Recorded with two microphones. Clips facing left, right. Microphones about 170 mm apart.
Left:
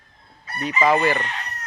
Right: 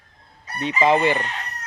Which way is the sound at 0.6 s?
25° right (ahead or behind).